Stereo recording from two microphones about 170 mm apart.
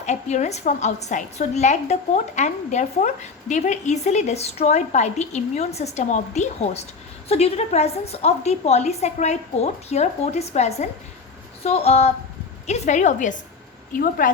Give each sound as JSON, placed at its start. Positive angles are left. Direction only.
{"t": 0.0, "sound": "a woman's voice", "side_deg": 45}